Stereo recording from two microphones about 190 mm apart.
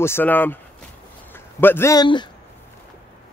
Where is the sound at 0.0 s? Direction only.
10° left (ahead or behind).